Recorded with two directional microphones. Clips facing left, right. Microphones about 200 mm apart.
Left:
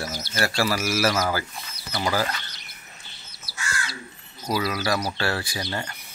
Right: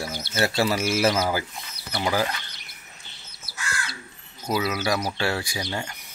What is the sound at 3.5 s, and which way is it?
Crow, 55° right (ahead or behind).